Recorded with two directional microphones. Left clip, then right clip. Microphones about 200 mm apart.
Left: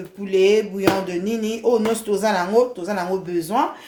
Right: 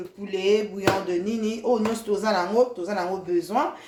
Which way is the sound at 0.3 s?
45° left (ahead or behind).